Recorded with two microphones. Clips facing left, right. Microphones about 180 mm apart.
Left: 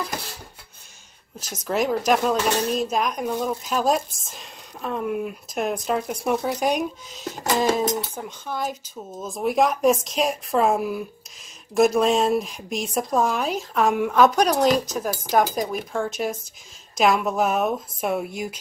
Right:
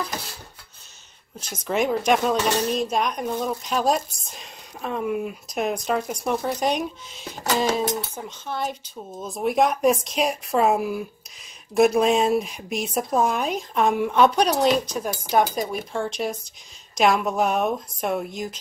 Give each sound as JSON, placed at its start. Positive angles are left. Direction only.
{"t": 1.5, "sound": "speech", "side_deg": 5}
{"t": 8.1, "sound": "speech", "side_deg": 10}